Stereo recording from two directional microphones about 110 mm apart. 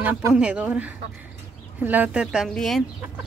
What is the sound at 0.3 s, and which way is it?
Speech, 10° right (ahead or behind).